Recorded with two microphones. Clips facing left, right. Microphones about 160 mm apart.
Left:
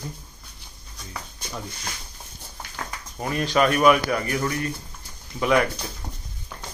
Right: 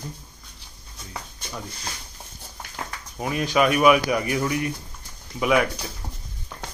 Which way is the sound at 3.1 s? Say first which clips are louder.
Even; 10° right (ahead or behind).